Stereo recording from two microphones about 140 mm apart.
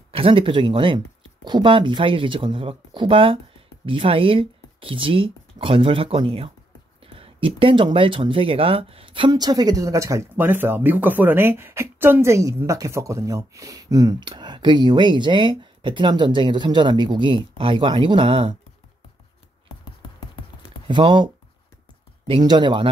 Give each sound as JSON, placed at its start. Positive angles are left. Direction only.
{"t": 0.1, "sound": "speech", "side_deg": -40}
{"t": 9.3, "sound": "speech", "side_deg": -30}
{"t": 20.8, "sound": "speech", "side_deg": -35}
{"t": 22.3, "sound": "speech", "side_deg": -30}